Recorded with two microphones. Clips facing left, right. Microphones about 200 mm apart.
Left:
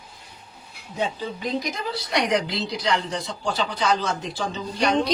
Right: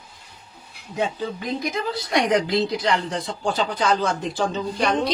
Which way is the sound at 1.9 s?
50° right (ahead or behind).